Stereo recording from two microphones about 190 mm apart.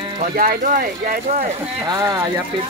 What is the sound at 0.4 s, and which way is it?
Speech, 50° right (ahead or behind).